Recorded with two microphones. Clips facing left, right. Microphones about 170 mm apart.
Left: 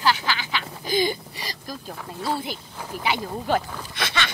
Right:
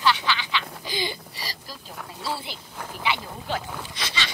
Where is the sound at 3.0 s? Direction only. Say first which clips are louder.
Left 3 dB; 45° left (ahead or behind).